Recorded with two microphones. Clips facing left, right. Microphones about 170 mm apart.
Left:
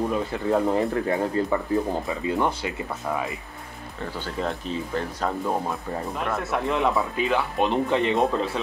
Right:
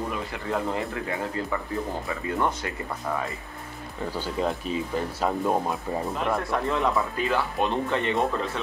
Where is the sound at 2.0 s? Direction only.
20° left (ahead or behind).